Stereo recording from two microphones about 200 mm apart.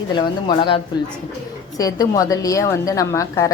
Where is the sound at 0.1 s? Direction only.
20° left (ahead or behind).